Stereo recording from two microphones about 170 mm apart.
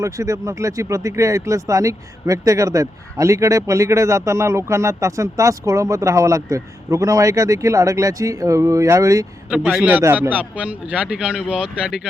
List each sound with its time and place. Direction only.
0.0 s speech: 20° right (ahead or behind)
9.5 s a man's voice: 5° right (ahead or behind)